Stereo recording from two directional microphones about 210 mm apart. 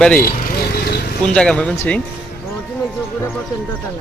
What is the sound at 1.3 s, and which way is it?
Speech, 5° left (ahead or behind).